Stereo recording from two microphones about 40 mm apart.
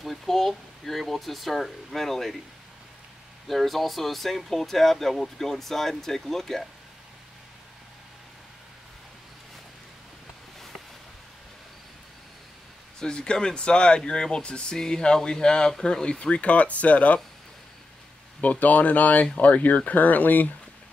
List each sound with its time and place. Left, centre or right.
0.0 s speech: centre
3.4 s speech: centre
13.0 s speech: left
18.4 s speech: left